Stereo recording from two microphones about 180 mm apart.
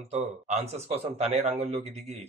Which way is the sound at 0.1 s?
35° right (ahead or behind).